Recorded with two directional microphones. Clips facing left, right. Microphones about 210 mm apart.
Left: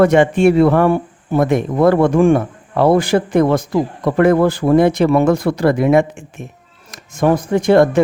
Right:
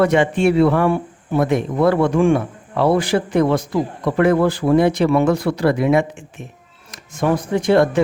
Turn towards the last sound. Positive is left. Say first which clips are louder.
# left 3 dB
turn(degrees=50)  # may be behind; listen again after turning